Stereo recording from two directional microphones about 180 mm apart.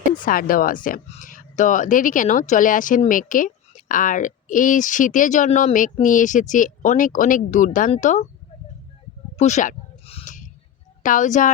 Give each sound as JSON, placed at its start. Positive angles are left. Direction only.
{"t": 0.3, "sound": "a woman's voice", "side_deg": 50}
{"t": 9.4, "sound": "a sound", "side_deg": 40}
{"t": 11.0, "sound": "a woman's voice", "side_deg": 45}